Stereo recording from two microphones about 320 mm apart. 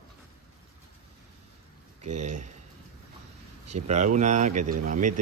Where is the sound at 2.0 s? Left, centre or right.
Right.